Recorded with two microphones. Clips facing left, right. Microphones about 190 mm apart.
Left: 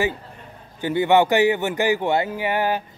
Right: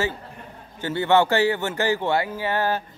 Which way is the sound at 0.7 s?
15° left (ahead or behind).